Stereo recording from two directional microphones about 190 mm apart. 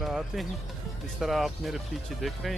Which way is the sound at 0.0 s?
Centre (ahead or behind).